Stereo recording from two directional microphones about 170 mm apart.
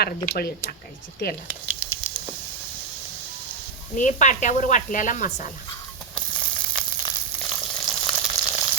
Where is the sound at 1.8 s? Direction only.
5° right (ahead or behind).